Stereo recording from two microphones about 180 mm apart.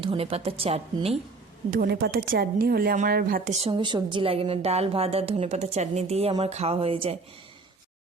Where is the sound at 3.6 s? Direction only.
25° right (ahead or behind).